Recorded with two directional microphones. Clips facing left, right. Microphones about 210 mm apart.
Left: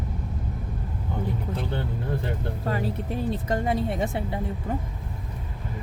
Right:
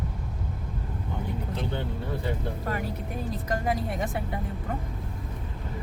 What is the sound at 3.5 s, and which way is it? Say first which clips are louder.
Speech: left 1 dB; 25° left (ahead or behind).